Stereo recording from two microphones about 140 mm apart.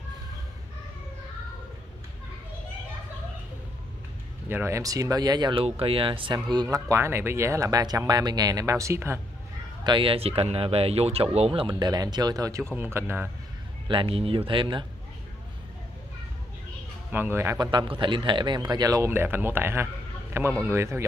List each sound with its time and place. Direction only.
4.5 s speech: 15° right (ahead or behind)
9.8 s speech: 40° right (ahead or behind); by 13.3 s 15° right (ahead or behind)
13.8 s speech: 40° right (ahead or behind)
17.1 s speech: 15° right (ahead or behind)
17.6 s speech: 35° right (ahead or behind)